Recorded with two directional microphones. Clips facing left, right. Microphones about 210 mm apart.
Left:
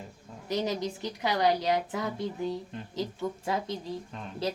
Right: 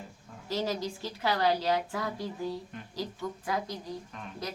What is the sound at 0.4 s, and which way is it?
A woman's voice, 20° left (ahead or behind).